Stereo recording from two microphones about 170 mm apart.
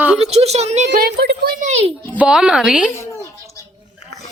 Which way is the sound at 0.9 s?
65° right (ahead or behind).